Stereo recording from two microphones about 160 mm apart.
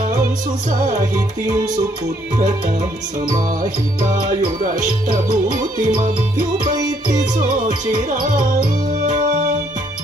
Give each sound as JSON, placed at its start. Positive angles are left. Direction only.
{"t": 5.3, "sound": "music", "side_deg": -50}
{"t": 6.7, "sound": "music", "side_deg": -25}
{"t": 7.2, "sound": "music", "side_deg": -50}